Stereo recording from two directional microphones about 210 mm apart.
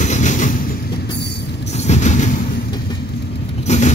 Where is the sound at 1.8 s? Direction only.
35° left (ahead or behind).